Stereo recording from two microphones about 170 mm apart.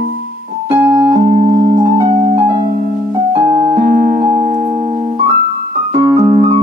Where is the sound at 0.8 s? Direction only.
15° right (ahead or behind).